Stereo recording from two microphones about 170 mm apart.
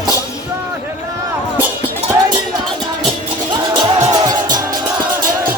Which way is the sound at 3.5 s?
25° right (ahead or behind).